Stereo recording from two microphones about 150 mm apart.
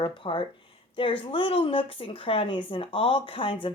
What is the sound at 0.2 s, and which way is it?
Speech, 35° left (ahead or behind).